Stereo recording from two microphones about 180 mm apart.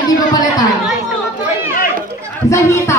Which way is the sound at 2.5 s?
15° left (ahead or behind).